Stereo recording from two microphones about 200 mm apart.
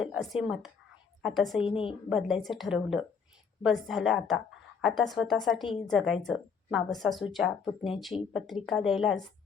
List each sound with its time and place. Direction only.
0.0 s speech: 5° right (ahead or behind)
1.6 s a woman's voice: 25° left (ahead or behind)
2.0 s speech: centre (ahead or behind)
5.6 s a woman's voice: 25° left (ahead or behind)
5.9 s speech: centre (ahead or behind)